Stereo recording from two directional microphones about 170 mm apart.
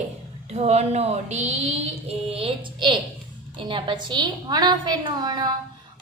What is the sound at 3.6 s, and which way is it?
A woman's voice, 30° right (ahead or behind).